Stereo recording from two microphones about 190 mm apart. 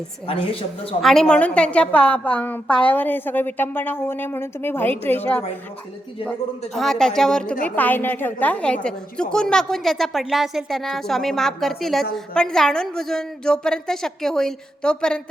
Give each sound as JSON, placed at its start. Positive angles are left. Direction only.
{"t": 0.3, "sound": "a woman's voice", "side_deg": 30}
{"t": 1.0, "sound": "a woman's voice", "side_deg": 5}
{"t": 6.7, "sound": "a woman's voice", "side_deg": 0}